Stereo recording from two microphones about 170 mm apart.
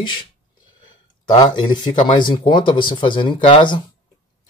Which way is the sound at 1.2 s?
25° left (ahead or behind).